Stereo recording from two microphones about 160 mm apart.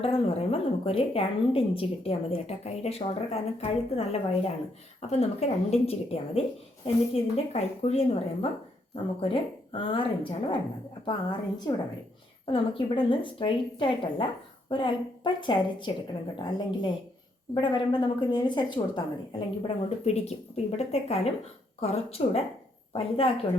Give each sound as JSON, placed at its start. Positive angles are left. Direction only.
{"t": 0.0, "sound": "a woman's voice", "side_deg": 35}
{"t": 17.5, "sound": "a woman's voice", "side_deg": 30}